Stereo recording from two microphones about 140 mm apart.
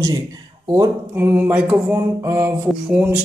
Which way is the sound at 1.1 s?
10° right (ahead or behind).